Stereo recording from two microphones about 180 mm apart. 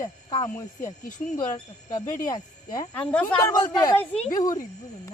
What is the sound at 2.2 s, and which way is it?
Speech, 20° left (ahead or behind).